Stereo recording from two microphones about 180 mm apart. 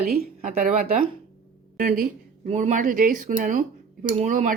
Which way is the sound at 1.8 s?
50° right (ahead or behind).